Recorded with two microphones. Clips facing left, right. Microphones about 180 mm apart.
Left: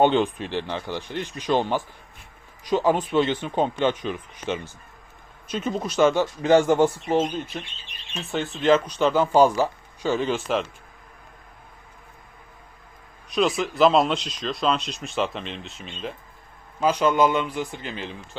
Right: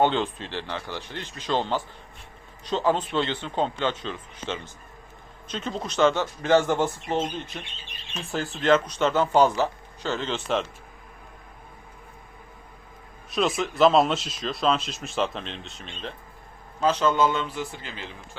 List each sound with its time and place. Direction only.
0.0 s speech: 15° left (ahead or behind)
8.3 s speech: centre (ahead or behind)
9.0 s speech: 10° left (ahead or behind)
13.3 s speech: centre (ahead or behind)
16.8 s speech: 15° left (ahead or behind)